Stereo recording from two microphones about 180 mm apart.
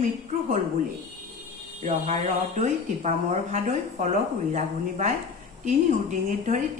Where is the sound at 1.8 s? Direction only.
40° right (ahead or behind).